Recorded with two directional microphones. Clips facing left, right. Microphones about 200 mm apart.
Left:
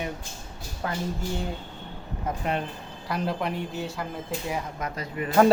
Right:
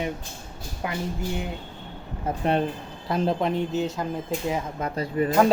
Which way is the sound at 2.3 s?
35° right (ahead or behind).